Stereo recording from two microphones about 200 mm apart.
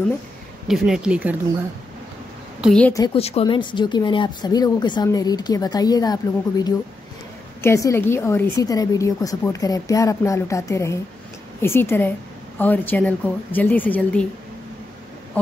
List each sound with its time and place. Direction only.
0.7 s speech: 5° right (ahead or behind)
2.6 s speech: 5° left (ahead or behind)
3.2 s a woman's voice: 30° left (ahead or behind); by 14.2 s 10° left (ahead or behind)